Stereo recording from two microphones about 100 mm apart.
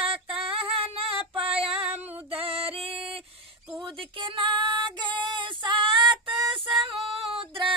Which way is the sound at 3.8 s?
55° right (ahead or behind).